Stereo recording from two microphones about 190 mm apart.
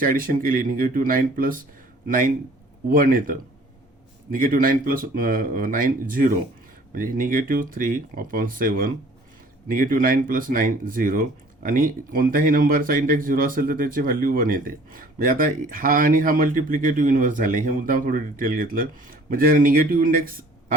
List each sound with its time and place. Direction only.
0.0 s speech: 50° right (ahead or behind)